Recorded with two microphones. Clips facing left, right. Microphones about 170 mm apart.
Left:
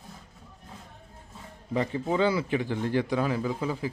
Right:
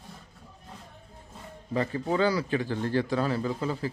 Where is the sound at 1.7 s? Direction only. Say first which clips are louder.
Even; 20° left (ahead or behind).